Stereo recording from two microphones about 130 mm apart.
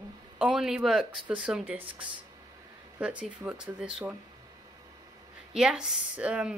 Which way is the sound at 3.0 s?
10° right (ahead or behind).